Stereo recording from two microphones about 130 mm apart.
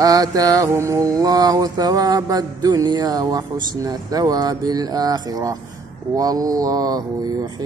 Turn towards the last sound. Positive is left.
turn(degrees=-30)  # may be behind; listen again after turning